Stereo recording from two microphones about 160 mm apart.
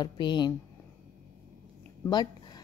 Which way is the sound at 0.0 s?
30° left (ahead or behind).